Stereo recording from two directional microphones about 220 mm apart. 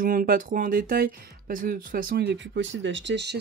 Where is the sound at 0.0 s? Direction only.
40° right (ahead or behind).